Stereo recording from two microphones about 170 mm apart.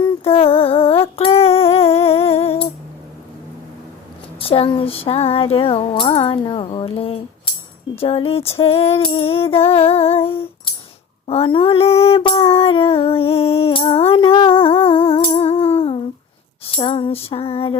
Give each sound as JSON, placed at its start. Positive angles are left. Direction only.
{"t": 0.0, "sound": "female singing", "side_deg": 35}
{"t": 4.4, "sound": "music", "side_deg": 35}
{"t": 11.3, "sound": "female singing", "side_deg": 35}
{"t": 16.7, "sound": "music", "side_deg": 30}